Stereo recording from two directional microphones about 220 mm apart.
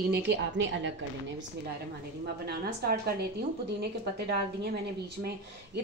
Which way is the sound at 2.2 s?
45° right (ahead or behind).